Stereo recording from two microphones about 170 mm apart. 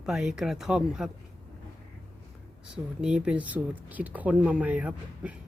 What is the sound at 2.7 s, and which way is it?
Speech, 5° right (ahead or behind).